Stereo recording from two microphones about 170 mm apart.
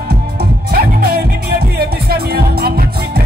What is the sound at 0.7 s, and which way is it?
Music, 65° right (ahead or behind).